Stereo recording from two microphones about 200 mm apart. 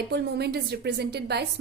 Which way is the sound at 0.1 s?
55° right (ahead or behind).